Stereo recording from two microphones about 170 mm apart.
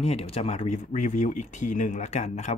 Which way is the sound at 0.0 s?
35° left (ahead or behind).